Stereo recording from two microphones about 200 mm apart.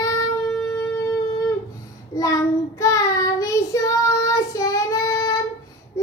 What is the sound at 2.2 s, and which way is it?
Child singing, 15° left (ahead or behind).